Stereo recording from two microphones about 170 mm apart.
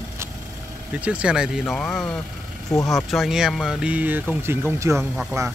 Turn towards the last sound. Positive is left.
turn(degrees=-15)  # may be behind; listen again after turning